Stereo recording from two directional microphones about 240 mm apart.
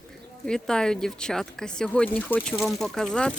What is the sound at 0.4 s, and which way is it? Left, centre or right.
Speech, centre.